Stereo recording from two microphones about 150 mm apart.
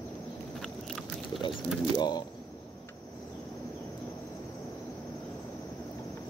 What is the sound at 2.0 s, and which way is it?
Speech, 30° left (ahead or behind).